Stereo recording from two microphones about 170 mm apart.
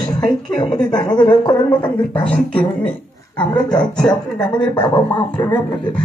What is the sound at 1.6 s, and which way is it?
Speech, 10° left (ahead or behind).